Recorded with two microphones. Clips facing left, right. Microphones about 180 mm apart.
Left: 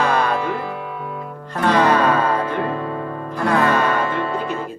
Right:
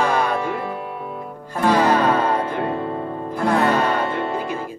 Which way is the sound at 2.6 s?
25° right (ahead or behind).